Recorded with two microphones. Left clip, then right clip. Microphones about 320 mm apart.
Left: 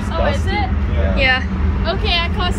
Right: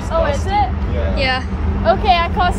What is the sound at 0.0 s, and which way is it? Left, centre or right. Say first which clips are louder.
Vehicle: right 3 dB; centre.